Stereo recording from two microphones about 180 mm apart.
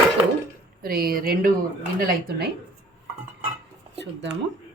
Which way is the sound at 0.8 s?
55° right (ahead or behind).